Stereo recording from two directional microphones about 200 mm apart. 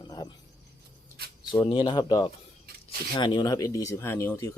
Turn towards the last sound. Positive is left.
turn(degrees=15)  # may be behind; listen again after turning